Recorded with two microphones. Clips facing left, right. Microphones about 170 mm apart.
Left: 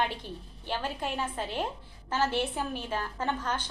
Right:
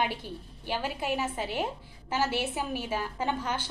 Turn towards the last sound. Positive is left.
turn(degrees=-10)  # may be behind; listen again after turning